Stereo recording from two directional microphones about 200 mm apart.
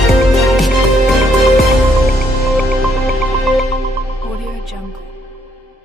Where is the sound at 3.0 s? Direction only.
Centre (ahead or behind).